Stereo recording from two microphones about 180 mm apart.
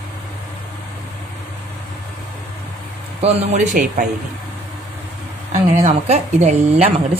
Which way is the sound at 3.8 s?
50° right (ahead or behind).